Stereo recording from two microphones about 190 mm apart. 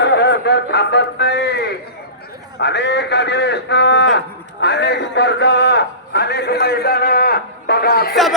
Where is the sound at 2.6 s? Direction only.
65° left (ahead or behind).